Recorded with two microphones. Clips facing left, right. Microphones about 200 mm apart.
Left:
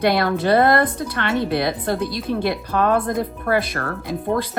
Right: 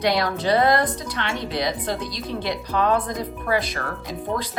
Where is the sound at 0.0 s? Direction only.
55° left (ahead or behind).